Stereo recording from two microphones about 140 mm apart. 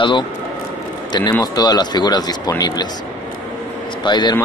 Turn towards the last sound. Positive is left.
turn(degrees=30)  # may be behind; listen again after turning